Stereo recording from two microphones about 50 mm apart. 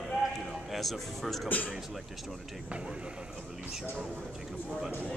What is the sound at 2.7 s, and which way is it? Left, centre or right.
Speech, right.